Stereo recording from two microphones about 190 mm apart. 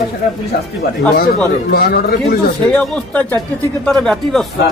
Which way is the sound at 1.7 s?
55° left (ahead or behind).